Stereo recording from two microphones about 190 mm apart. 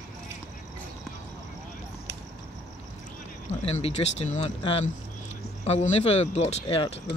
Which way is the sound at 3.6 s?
35° left (ahead or behind).